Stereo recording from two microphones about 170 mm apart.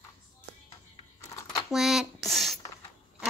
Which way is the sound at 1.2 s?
20° left (ahead or behind).